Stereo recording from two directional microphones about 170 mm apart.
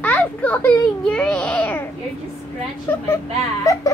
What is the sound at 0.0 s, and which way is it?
Baby cry, 10° left (ahead or behind).